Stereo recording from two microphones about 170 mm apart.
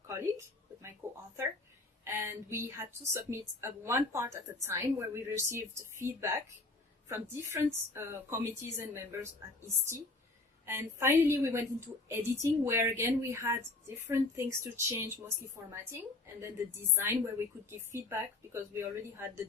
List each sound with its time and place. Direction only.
0.1 s a sound: 15° right (ahead or behind)
2.0 s a woman's voice: 15° right (ahead or behind)
10.7 s a woman's voice: 15° right (ahead or behind)